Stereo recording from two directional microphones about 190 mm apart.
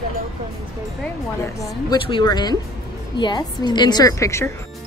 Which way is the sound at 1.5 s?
20° left (ahead or behind).